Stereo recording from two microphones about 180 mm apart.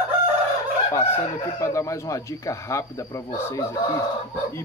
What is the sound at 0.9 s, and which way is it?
Speech, 15° left (ahead or behind).